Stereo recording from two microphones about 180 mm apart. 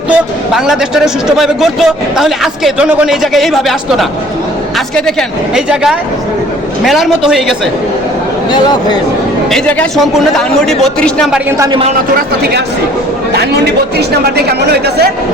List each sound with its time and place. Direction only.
0.1 s a man's voice: 5° right (ahead or behind)
5.5 s a man's voice: 5° right (ahead or behind)
8.4 s speech: 25° left (ahead or behind)
9.5 s a man's voice: 5° left (ahead or behind)
11.5 s a man's voice: 20° right (ahead or behind)
13.9 s speech: 65° right (ahead or behind)